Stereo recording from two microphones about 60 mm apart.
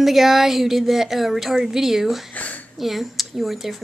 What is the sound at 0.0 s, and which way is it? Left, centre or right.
Speech, centre.